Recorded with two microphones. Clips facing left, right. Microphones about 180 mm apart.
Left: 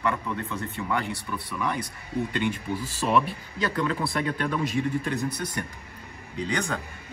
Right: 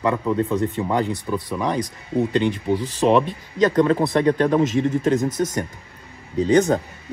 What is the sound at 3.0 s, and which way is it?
Speech, 40° right (ahead or behind).